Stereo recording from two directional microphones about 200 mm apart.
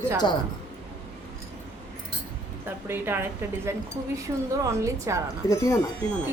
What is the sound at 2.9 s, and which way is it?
A woman's voice, 10° right (ahead or behind).